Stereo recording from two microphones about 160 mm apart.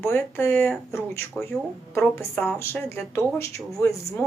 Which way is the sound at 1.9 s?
15° left (ahead or behind).